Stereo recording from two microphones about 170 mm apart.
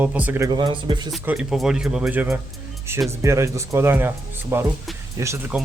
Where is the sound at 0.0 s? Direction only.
10° right (ahead or behind); by 1.0 s 25° right (ahead or behind).